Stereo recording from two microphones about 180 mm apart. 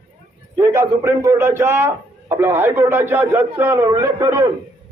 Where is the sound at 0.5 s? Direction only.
15° right (ahead or behind).